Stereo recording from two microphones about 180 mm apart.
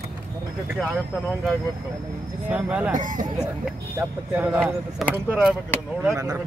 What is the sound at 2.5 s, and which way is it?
Speech, 10° right (ahead or behind).